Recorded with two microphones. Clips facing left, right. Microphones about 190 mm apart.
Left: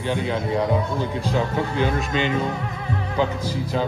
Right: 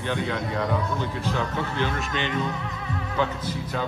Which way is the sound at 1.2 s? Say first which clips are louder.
Left 6 dB; 15° left (ahead or behind).